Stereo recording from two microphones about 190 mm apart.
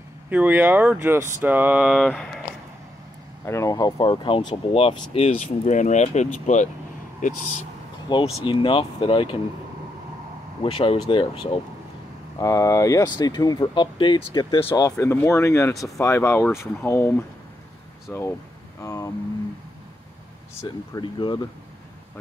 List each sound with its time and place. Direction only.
0.3 s speech: 10° right (ahead or behind)
3.4 s speech: 15° left (ahead or behind); by 7.5 s 45° left (ahead or behind)
8.1 s speech: 25° left (ahead or behind)
10.6 s speech: 30° left (ahead or behind); by 17.1 s 15° left (ahead or behind)
18.1 s speech: 10° left (ahead or behind)
20.6 s speech: 25° left (ahead or behind)